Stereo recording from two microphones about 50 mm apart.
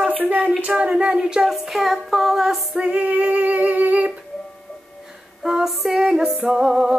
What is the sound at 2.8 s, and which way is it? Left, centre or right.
Female singing, right.